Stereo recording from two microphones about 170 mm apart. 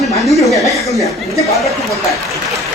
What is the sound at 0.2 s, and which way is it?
Chuckle, centre (ahead or behind).